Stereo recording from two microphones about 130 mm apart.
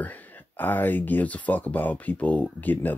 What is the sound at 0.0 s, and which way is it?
Speech, 10° left (ahead or behind).